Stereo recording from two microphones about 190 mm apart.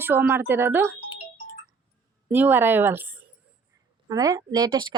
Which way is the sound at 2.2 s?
10° right (ahead or behind).